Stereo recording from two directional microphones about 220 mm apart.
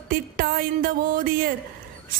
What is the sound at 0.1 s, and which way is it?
Music, 40° right (ahead or behind).